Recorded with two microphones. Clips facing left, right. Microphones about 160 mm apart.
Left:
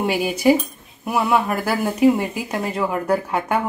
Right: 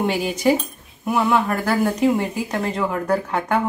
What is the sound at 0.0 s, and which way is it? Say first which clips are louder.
Speech: left 1 dB; 10° left (ahead or behind).